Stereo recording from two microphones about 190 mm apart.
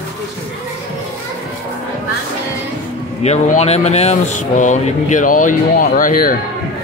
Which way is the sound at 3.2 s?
35° left (ahead or behind).